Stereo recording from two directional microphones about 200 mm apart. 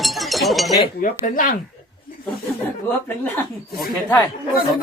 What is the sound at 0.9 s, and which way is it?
Speech, 45° left (ahead or behind).